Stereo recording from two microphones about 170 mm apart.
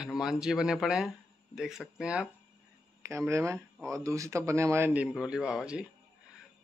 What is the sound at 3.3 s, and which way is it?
A man's voice, 15° right (ahead or behind).